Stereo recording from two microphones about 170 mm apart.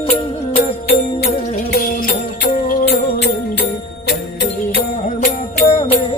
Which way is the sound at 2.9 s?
80° left.